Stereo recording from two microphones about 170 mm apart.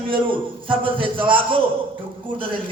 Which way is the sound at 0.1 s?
30° right (ahead or behind).